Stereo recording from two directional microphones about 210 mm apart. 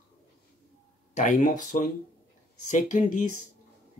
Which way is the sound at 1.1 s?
40° left (ahead or behind).